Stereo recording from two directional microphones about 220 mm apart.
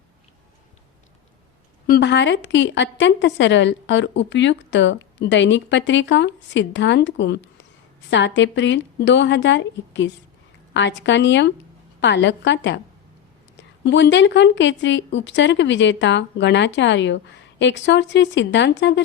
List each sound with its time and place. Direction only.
1.9 s a woman's voice: 50° left (ahead or behind)